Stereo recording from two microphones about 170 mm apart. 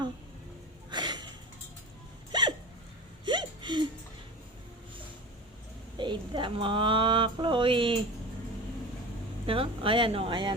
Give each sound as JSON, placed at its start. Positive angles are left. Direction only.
{"t": 0.9, "sound": "gasp", "side_deg": -25}
{"t": 2.3, "sound": "hiccup", "side_deg": -25}
{"t": 3.2, "sound": "whimper", "side_deg": -25}
{"t": 6.0, "sound": "speech", "side_deg": -30}
{"t": 9.5, "sound": "speech", "side_deg": -30}